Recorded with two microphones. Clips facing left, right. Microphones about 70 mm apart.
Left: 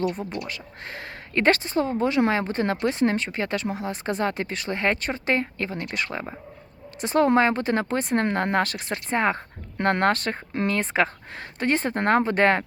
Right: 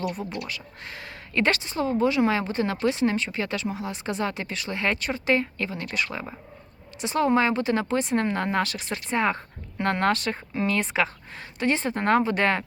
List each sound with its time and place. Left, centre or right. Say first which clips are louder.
0.3 s speech: left 1 dB; left